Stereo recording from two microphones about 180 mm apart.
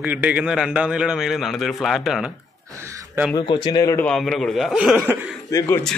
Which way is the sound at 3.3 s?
25° left (ahead or behind).